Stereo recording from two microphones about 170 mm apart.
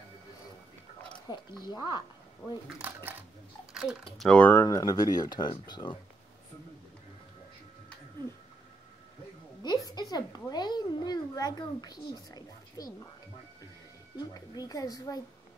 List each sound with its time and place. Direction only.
1.3 s a child's voice: 25° left (ahead or behind)
2.8 s a child's voice: 10° right (ahead or behind); by 5.9 s 25° left (ahead or behind)
9.6 s a child's voice: 25° left (ahead or behind)
14.1 s a child's voice: 20° left (ahead or behind)